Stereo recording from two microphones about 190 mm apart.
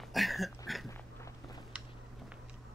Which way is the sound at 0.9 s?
15° left (ahead or behind).